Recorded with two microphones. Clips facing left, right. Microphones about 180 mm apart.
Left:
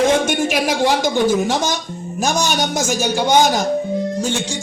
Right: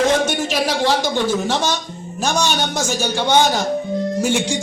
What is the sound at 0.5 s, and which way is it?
Speech, 15° left (ahead or behind).